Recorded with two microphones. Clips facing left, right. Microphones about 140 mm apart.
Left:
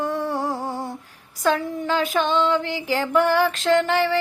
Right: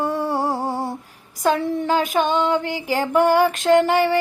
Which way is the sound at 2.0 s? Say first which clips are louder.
Right 1 dB; 15° right (ahead or behind).